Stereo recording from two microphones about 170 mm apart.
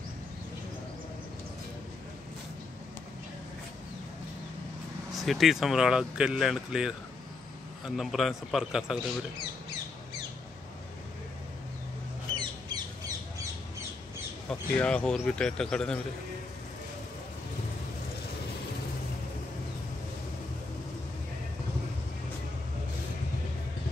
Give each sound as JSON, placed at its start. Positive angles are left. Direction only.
{"t": 5.1, "sound": "speech", "side_deg": 0}
{"t": 12.4, "sound": "bird", "side_deg": -25}
{"t": 14.5, "sound": "speech", "side_deg": 5}